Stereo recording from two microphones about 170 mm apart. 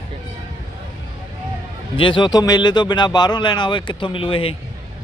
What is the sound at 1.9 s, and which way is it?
Speech, 30° left (ahead or behind).